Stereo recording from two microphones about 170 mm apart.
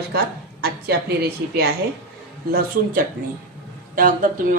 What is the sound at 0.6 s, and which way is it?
Speech, 65° right (ahead or behind).